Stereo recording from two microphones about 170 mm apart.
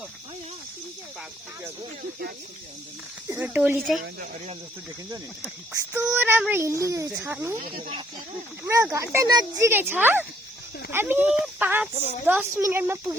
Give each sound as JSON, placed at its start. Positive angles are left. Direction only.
{"t": 3.2, "sound": "speech", "side_deg": -10}
{"t": 5.7, "sound": "speech", "side_deg": -15}
{"t": 7.7, "sound": "speech", "side_deg": -30}
{"t": 8.6, "sound": "speech", "side_deg": -15}